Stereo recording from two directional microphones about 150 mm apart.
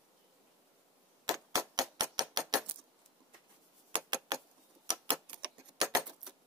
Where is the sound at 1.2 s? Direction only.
25° right (ahead or behind).